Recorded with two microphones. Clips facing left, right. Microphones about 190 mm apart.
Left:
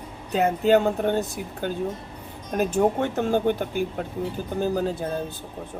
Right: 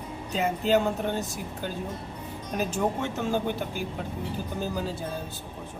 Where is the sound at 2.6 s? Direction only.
55° left (ahead or behind).